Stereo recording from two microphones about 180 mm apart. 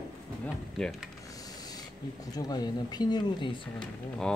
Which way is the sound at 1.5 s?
20° left (ahead or behind).